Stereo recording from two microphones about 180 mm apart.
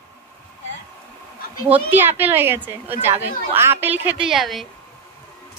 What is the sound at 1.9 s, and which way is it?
Speech, 10° right (ahead or behind).